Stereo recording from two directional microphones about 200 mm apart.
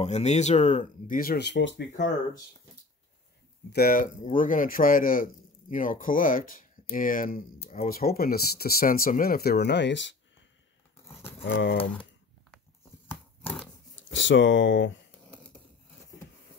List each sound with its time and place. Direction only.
0.0 s speech: 35° left (ahead or behind); by 1.9 s 65° left (ahead or behind)
3.7 s a man's voice: 45° left (ahead or behind); by 10.1 s 65° left (ahead or behind)
11.4 s speech: 65° left (ahead or behind)
11.7 s speech: 25° left (ahead or behind)
14.1 s speech: 65° left (ahead or behind)